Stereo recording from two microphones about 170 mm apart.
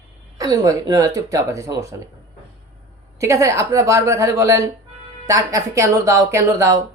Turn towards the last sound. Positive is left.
turn(degrees=-15)  # may be behind; listen again after turning